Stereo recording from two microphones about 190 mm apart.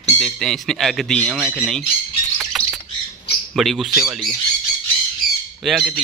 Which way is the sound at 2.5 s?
Centre (ahead or behind).